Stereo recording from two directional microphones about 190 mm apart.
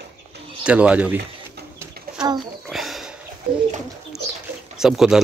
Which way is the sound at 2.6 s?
Centre (ahead or behind).